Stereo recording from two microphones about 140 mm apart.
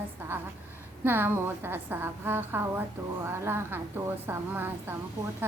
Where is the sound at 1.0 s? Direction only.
15° right (ahead or behind).